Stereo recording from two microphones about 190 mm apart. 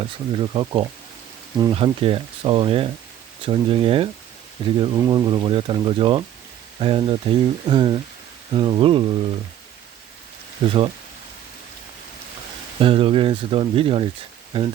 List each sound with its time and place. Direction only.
0.0 s speech: 25° right (ahead or behind)
10.6 s speech: 30° right (ahead or behind)
12.8 s speech: 30° right (ahead or behind)